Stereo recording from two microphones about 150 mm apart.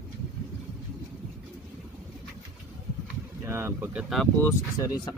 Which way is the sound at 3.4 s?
15° right (ahead or behind).